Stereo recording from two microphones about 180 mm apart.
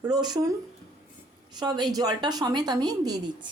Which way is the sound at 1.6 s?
20° right (ahead or behind).